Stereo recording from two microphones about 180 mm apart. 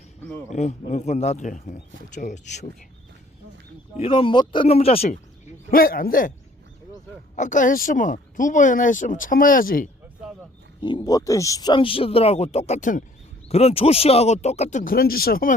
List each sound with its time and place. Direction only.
0.5 s speech: 40° left (ahead or behind)
3.9 s speech: 30° left (ahead or behind)
5.7 s speech: 55° left (ahead or behind)
7.3 s speech: 45° left (ahead or behind)
10.8 s speech: 25° left (ahead or behind); by 15.5 s 55° left (ahead or behind)